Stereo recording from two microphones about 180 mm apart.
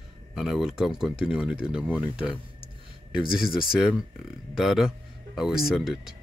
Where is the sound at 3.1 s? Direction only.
5° right (ahead or behind).